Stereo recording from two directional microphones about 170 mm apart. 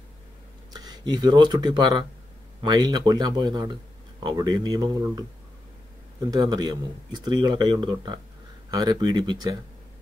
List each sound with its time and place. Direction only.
0.7 s speech: 25° right (ahead or behind)
6.3 s speech: 25° right (ahead or behind)